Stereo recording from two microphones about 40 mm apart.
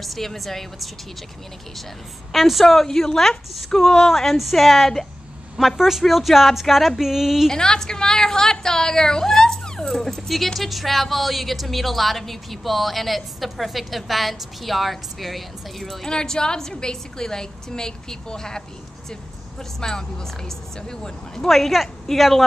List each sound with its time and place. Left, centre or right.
0.0 s a woman's voice: centre
2.3 s a woman's voice: centre
2.7 s a woman's voice: centre
7.4 s a woman's voice: centre
19.8 s a woman's voice: centre
21.5 s a woman's voice: centre